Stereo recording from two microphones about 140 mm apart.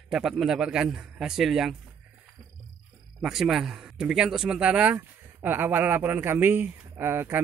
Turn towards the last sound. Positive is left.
turn(degrees=-15)  # may be behind; listen again after turning